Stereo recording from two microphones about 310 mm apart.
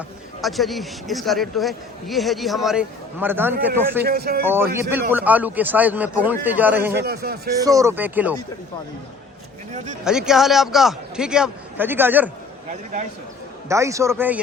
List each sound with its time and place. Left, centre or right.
0.4 s a man's voice: centre
4.0 s speech: right
4.4 s a man's voice: centre
7.0 s speech: right
7.6 s a man's voice: centre
10.0 s a man's voice: centre
13.7 s a man's voice: centre